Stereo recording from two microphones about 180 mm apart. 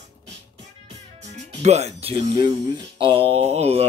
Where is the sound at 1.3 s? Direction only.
40° right (ahead or behind).